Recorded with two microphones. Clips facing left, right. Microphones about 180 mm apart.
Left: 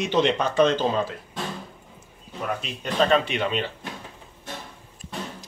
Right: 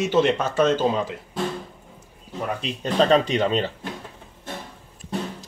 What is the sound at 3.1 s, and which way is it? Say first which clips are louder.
Speech: right 3 dB; 40° right (ahead or behind).